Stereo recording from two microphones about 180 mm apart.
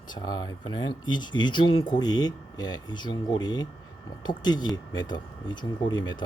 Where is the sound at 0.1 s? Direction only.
25° left (ahead or behind).